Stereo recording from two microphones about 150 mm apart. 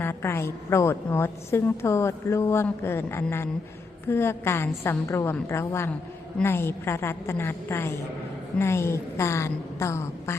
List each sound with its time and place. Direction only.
0.0 s a woman's voice: 15° left (ahead or behind)